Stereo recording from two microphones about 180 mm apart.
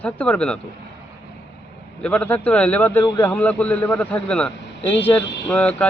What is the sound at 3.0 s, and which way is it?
Speech, 20° left (ahead or behind).